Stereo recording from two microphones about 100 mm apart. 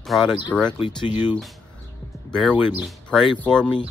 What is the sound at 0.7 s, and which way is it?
Speech, 60° left (ahead or behind).